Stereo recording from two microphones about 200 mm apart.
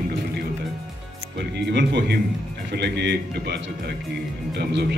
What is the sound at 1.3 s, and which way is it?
Speech, 55° right (ahead or behind).